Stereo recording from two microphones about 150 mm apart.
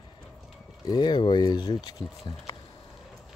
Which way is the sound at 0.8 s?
30° left (ahead or behind).